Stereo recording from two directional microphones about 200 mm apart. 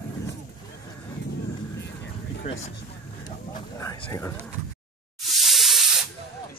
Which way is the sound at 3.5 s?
15° left (ahead or behind).